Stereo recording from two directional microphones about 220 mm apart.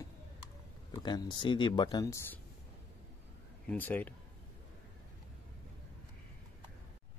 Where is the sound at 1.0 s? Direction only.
20° left (ahead or behind).